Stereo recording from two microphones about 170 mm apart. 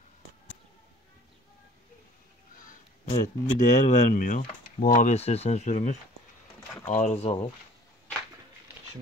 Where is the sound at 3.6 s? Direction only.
45° left (ahead or behind).